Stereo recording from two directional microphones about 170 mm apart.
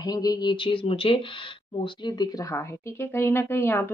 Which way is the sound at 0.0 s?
20° left (ahead or behind).